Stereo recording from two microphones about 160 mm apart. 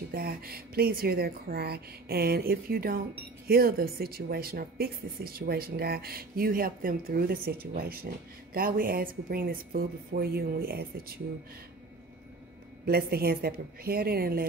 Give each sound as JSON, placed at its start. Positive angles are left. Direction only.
{"t": 0.1, "sound": "speech", "side_deg": -70}
{"t": 12.8, "sound": "speech", "side_deg": -75}